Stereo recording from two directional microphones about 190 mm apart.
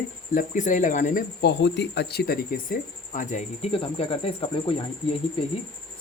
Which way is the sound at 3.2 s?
35° left (ahead or behind).